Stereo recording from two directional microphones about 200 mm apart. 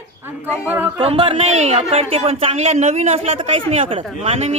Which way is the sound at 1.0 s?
30° right (ahead or behind).